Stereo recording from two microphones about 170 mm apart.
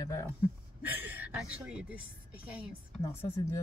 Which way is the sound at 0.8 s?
10° right (ahead or behind).